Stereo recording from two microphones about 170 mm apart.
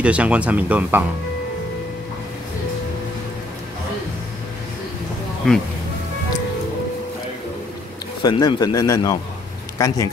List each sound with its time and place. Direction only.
0.0 s speech: 5° right (ahead or behind)
5.4 s speech: 5° left (ahead or behind)
8.2 s a man's voice: 25° left (ahead or behind)